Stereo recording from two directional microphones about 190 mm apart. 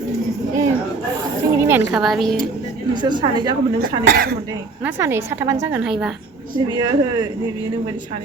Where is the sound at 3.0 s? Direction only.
25° right (ahead or behind).